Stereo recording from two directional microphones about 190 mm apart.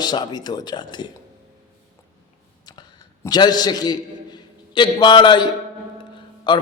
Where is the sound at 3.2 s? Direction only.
20° left (ahead or behind).